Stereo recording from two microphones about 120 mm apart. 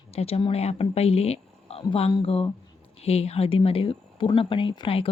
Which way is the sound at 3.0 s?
60° left (ahead or behind).